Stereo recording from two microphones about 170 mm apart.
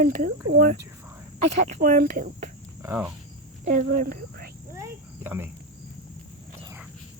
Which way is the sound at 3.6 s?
50° right (ahead or behind).